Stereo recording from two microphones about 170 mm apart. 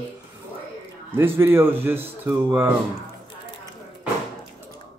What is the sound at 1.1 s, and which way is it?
Speech, 15° right (ahead or behind).